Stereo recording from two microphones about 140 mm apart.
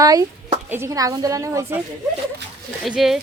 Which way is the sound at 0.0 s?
25° right (ahead or behind).